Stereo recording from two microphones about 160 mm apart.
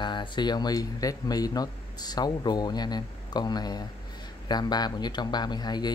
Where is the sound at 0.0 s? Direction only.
30° left (ahead or behind).